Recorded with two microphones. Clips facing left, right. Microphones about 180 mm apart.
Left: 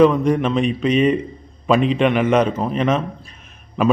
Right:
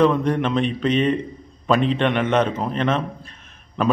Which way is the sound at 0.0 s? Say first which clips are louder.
Left 4 dB; 5° left (ahead or behind).